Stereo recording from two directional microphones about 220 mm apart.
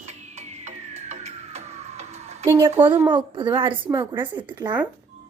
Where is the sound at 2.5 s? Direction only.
15° right (ahead or behind).